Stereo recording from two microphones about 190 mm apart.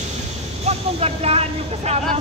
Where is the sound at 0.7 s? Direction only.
35° right (ahead or behind).